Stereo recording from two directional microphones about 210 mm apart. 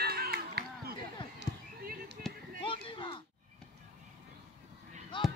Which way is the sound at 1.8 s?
45° right (ahead or behind).